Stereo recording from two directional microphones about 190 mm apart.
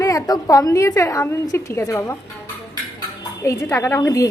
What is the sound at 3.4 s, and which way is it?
Speech, 15° left (ahead or behind).